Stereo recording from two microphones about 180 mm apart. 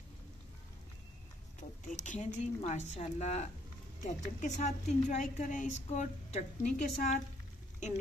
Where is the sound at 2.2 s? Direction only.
40° left (ahead or behind).